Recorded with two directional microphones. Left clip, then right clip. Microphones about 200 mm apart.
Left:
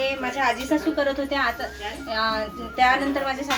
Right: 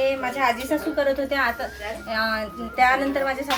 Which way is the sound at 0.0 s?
10° right (ahead or behind).